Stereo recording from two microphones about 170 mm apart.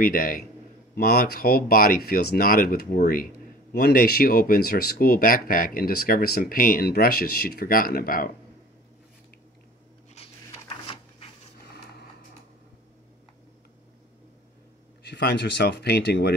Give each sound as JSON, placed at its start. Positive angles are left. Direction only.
{"t": 0.0, "sound": "speech", "side_deg": 55}
{"t": 15.0, "sound": "speech", "side_deg": 75}